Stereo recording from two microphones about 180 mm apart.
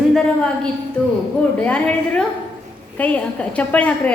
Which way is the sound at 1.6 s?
5° left (ahead or behind).